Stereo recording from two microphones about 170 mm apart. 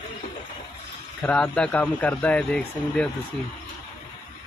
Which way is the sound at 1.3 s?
5° left (ahead or behind).